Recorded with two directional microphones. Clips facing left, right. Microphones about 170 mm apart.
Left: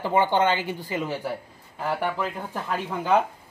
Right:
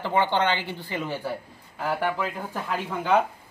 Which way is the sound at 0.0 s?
10° left (ahead or behind).